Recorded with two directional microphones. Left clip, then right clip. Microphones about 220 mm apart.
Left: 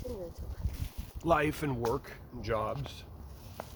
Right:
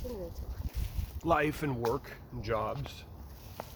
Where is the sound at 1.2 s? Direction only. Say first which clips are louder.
Even; 10° left (ahead or behind).